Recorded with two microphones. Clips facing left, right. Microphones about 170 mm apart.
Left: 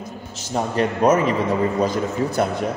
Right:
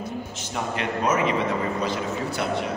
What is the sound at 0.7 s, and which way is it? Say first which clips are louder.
Speech: left 7 dB; 40° left (ahead or behind).